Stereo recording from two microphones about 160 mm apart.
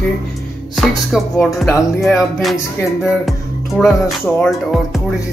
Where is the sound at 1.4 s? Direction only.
Centre (ahead or behind).